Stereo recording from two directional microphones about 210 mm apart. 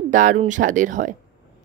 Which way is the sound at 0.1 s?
35° right (ahead or behind).